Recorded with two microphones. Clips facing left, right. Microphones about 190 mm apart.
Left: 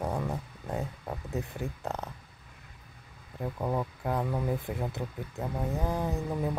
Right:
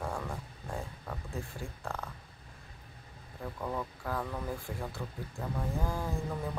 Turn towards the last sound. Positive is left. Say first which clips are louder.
# left 5 dB
turn(degrees=20)  # may be behind; listen again after turning